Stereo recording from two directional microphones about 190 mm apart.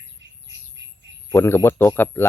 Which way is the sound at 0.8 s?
70° right (ahead or behind).